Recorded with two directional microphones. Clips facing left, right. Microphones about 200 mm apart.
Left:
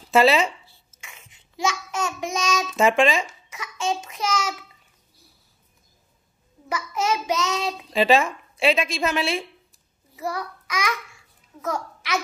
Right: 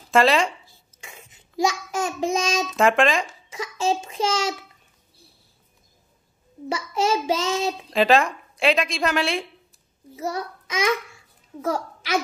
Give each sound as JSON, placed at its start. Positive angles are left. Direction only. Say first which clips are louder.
{"t": 0.1, "sound": "speech", "louder": "left 1 dB", "side_deg": 5}
{"t": 0.7, "sound": "child singing", "louder": "right 3 dB", "side_deg": -40}
{"t": 2.7, "sound": "a woman's voice", "louder": "even", "side_deg": 0}
{"t": 3.4, "sound": "a sound", "louder": "right 3 dB", "side_deg": -30}
{"t": 6.7, "sound": "child singing", "louder": "right 2 dB", "side_deg": -30}
{"t": 7.9, "sound": "a woman's voice", "louder": "even", "side_deg": 0}
{"t": 10.1, "sound": "a child's voice", "louder": "right 1 dB", "side_deg": -25}